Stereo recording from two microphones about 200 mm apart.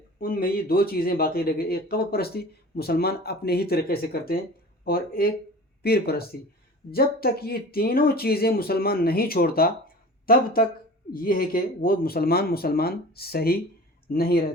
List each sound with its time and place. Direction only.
0.2 s speech: 50° left (ahead or behind)